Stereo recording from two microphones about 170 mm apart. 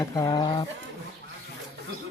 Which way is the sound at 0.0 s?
20° left (ahead or behind).